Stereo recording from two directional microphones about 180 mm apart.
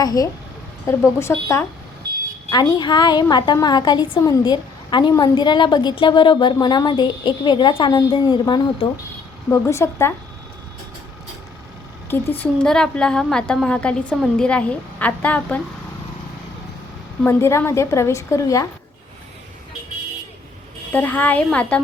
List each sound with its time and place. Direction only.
0.0 s a woman's voice: 20° left (ahead or behind)
12.4 s a woman's voice: 5° left (ahead or behind)
17.2 s a woman's voice: 15° left (ahead or behind)
20.9 s a woman's voice: 10° left (ahead or behind)